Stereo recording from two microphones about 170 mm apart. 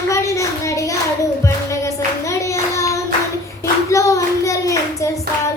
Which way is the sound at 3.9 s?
20° left (ahead or behind).